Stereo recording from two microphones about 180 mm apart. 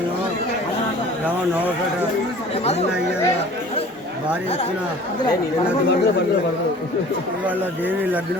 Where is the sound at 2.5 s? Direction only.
35° left (ahead or behind).